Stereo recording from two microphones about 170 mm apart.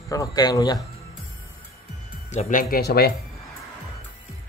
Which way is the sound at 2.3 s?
55° left (ahead or behind).